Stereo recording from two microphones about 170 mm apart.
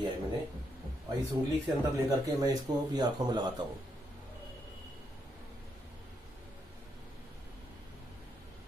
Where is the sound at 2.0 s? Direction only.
20° right (ahead or behind).